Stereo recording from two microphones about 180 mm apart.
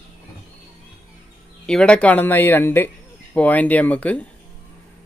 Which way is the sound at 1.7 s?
5° left (ahead or behind).